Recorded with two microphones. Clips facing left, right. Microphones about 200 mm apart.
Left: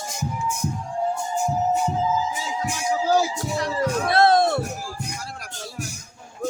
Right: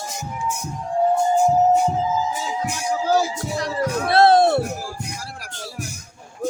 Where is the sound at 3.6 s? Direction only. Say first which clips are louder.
Even; 30° right (ahead or behind).